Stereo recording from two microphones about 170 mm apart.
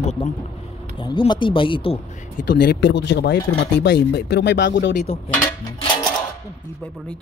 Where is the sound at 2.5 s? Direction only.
80° left.